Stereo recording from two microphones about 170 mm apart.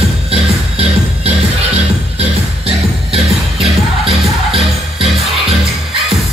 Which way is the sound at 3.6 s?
35° right (ahead or behind).